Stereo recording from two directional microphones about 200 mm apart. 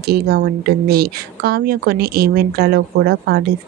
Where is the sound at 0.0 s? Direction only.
50° right (ahead or behind).